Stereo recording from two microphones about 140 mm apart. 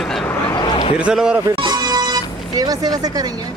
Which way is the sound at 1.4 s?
30° right (ahead or behind).